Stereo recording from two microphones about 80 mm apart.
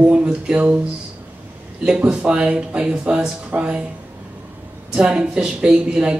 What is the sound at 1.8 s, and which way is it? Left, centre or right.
Speech, centre.